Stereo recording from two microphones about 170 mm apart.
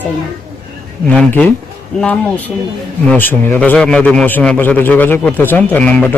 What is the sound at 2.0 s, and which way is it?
A man's voice, 5° left (ahead or behind).